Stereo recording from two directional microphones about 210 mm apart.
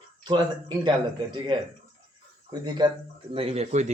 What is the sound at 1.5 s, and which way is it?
Speech, 20° right (ahead or behind).